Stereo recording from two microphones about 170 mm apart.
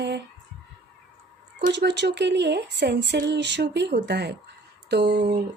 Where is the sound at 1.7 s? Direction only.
90° right.